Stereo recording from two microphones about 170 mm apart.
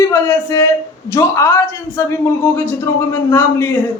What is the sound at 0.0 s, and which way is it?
Speech, 15° left (ahead or behind).